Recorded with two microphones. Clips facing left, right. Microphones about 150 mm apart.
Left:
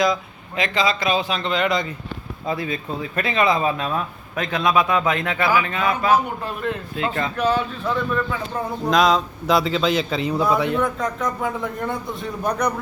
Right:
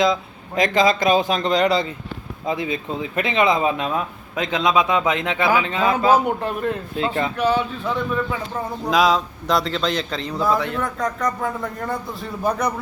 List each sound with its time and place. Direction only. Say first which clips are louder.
0.5 s a man's voice: right 4 dB; 45° right (ahead or behind)
2.5 s speech: right 1 dB; 20° right (ahead or behind)
6.6 s speech: right 1 dB; 40° right (ahead or behind)
7.1 s a man's voice: right 1 dB; 15° right (ahead or behind); by 10.7 s 10° left (ahead or behind)
10.8 s a man's voice: left 1 dB; centre (ahead or behind)